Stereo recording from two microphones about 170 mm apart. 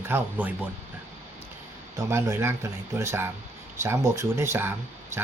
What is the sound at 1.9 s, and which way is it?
Speech, 15° right (ahead or behind).